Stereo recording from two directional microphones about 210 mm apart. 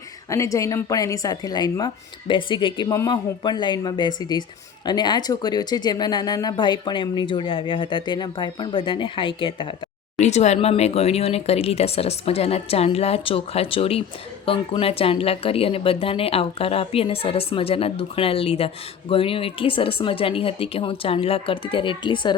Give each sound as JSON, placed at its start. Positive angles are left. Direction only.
{"t": 0.3, "sound": "speech", "side_deg": 15}